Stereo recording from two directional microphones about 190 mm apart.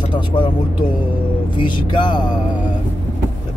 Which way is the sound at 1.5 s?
25° left (ahead or behind).